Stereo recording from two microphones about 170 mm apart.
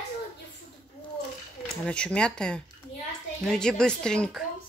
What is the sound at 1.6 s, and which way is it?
Speech, 5° left (ahead or behind).